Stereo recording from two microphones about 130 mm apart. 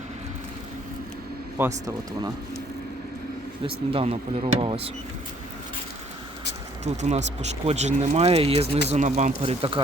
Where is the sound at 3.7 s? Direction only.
50° right (ahead or behind).